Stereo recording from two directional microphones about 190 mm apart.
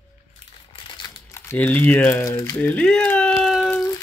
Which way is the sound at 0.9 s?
20° left (ahead or behind).